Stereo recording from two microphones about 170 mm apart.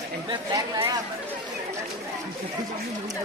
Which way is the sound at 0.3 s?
25° right (ahead or behind).